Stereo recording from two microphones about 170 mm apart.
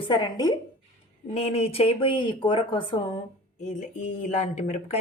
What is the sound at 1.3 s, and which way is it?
Speech, 35° left (ahead or behind).